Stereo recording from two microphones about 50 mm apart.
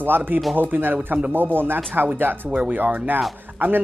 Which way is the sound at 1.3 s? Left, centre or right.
Right.